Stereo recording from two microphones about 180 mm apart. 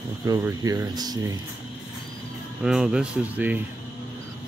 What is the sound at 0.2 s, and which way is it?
Speech, 15° right (ahead or behind).